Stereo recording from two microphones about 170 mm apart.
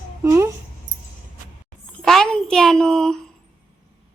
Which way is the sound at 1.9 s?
5° left (ahead or behind).